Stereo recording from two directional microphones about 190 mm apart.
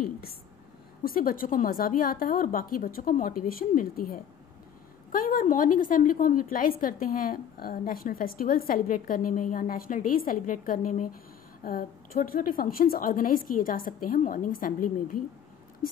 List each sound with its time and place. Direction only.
1.0 s a woman's voice: 50° left (ahead or behind)